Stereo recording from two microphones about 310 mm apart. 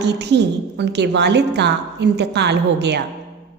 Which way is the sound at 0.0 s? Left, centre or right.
Right.